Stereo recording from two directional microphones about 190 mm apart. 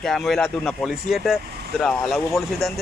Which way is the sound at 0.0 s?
Centre (ahead or behind).